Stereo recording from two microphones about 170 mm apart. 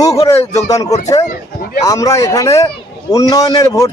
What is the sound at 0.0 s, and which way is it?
A man's voice, 20° left (ahead or behind).